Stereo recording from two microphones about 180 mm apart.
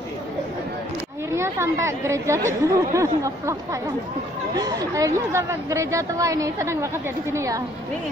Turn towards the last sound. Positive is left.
turn(degrees=-15)  # may be behind; listen again after turning